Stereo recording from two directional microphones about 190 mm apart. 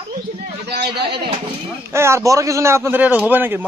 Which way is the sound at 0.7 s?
60° right (ahead or behind).